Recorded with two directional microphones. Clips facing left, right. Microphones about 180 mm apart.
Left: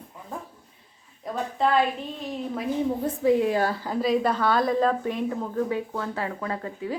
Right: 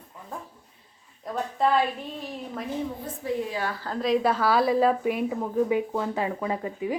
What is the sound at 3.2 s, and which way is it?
Speech, 90° left.